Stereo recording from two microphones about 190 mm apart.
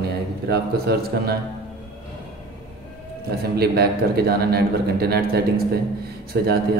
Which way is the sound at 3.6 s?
55° right (ahead or behind).